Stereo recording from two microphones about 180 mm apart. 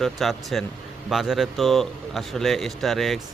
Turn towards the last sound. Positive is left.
turn(degrees=0)  # may be behind; listen again after turning